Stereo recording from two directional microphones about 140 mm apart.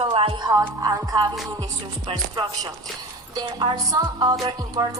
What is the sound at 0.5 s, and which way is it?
Music, 25° right (ahead or behind).